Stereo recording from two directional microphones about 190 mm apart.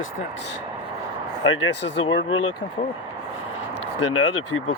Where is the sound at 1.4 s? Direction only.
90° left.